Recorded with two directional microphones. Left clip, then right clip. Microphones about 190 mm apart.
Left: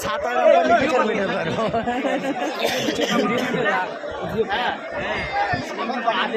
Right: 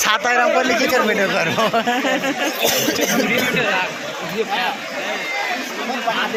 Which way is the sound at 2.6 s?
45° right (ahead or behind).